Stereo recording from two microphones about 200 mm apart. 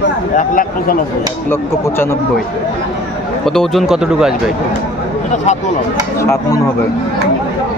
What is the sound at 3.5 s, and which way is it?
Speech, centre (ahead or behind).